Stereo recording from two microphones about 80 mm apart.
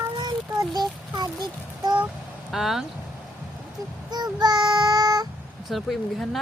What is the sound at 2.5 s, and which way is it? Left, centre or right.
Speech, centre.